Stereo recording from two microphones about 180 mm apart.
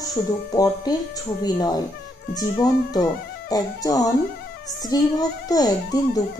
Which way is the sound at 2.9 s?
20° left (ahead or behind).